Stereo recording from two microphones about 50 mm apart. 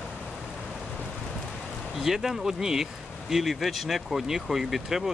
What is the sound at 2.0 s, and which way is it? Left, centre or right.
Speech, centre.